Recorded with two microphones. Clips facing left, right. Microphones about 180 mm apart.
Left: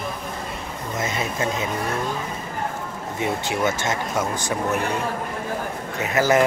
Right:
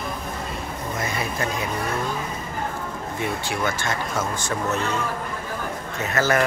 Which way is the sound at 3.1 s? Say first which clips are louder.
Left 3 dB; 20° left (ahead or behind).